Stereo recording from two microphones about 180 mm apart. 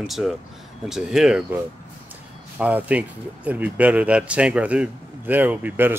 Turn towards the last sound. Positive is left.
turn(degrees=-10)  # may be behind; listen again after turning